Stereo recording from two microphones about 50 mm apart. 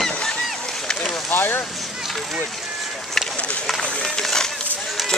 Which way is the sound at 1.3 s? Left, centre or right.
Left.